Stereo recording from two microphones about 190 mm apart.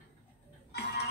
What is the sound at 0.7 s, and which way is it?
Music, 60° left (ahead or behind).